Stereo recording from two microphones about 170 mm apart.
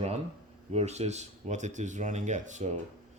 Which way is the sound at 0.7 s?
40° right (ahead or behind).